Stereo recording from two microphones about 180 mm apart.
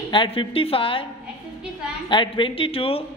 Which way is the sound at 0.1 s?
30° left (ahead or behind).